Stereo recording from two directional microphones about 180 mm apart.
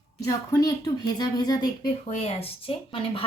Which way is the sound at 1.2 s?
25° left (ahead or behind).